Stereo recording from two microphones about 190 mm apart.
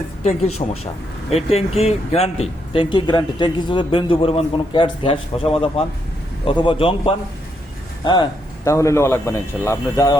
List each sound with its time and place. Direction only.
0.3 s a man's voice: 30° left (ahead or behind); by 10.2 s 15° left (ahead or behind)